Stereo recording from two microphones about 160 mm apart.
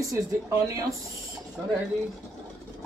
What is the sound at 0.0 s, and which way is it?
Speech, 20° right (ahead or behind).